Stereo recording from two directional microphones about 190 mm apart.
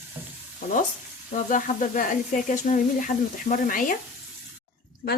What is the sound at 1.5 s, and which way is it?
Speech, 45° left (ahead or behind).